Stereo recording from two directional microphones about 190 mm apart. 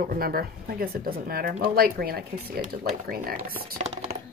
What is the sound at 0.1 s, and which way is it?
Speech, 50° right (ahead or behind).